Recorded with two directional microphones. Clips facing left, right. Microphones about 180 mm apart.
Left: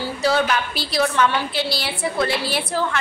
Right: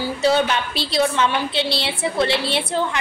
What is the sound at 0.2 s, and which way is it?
A woman's voice, 25° right (ahead or behind).